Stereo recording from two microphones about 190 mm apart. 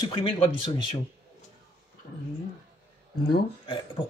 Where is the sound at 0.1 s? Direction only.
25° left (ahead or behind).